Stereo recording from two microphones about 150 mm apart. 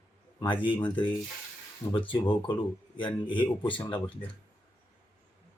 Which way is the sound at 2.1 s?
35° left (ahead or behind).